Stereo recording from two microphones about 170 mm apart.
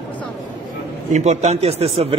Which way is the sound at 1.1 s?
40° right (ahead or behind).